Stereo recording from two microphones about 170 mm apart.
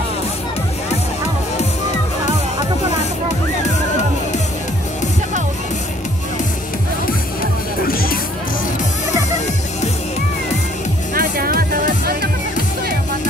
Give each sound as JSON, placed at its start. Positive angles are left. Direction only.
{"t": 7.8, "sound": "music", "side_deg": 60}
{"t": 11.1, "sound": "music", "side_deg": -60}